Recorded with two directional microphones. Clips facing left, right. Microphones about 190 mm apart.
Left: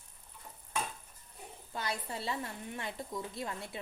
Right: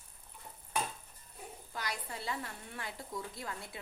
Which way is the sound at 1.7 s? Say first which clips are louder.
Left 4 dB; 25° left (ahead or behind).